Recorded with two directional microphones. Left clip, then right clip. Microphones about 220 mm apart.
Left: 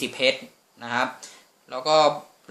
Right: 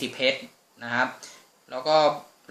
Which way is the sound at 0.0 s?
15° left (ahead or behind).